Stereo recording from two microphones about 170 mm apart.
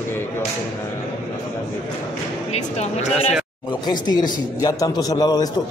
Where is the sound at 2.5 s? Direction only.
40° left (ahead or behind).